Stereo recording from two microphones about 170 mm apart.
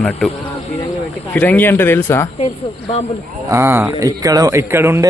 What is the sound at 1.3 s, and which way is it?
Speech, 10° left (ahead or behind).